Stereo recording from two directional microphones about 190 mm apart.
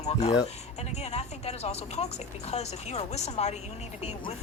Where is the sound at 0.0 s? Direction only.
35° left (ahead or behind).